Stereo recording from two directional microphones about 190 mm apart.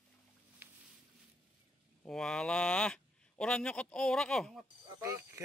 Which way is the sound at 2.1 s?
5° left (ahead or behind).